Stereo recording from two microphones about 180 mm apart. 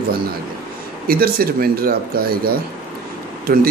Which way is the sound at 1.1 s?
55° right (ahead or behind).